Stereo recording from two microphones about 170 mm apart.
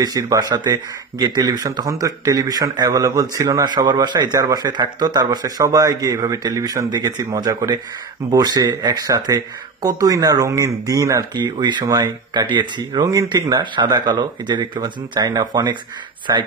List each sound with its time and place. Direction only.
0.0 s speech: 20° right (ahead or behind)